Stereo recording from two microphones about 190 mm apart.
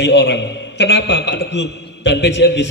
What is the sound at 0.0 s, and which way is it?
A man's voice, 65° left (ahead or behind).